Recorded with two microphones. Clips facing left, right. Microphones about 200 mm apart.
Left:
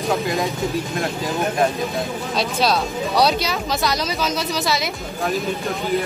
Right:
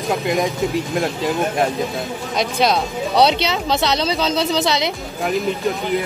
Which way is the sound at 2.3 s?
20° right (ahead or behind).